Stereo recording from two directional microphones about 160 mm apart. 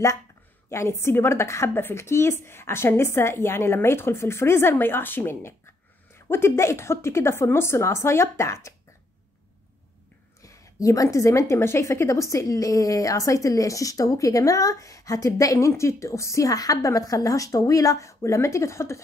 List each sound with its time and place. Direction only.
0.7 s a woman's voice: 15° left (ahead or behind)
10.4 s a woman's voice: 20° left (ahead or behind)